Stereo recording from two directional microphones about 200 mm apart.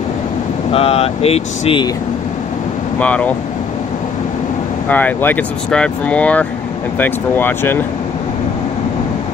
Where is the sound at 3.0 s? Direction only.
5° left (ahead or behind).